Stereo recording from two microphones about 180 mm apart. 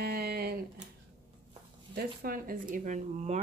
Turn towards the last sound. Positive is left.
turn(degrees=-40)  # may be behind; listen again after turning